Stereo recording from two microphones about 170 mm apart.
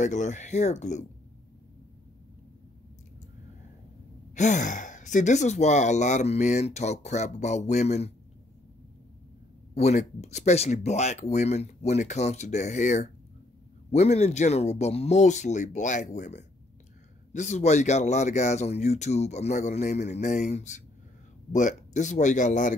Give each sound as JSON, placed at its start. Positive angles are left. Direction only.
{"t": 0.0, "sound": "speech", "side_deg": 45}
{"t": 4.4, "sound": "speech", "side_deg": 45}
{"t": 9.8, "sound": "speech", "side_deg": 40}